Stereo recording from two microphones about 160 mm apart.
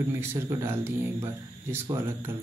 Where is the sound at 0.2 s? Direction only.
15° right (ahead or behind).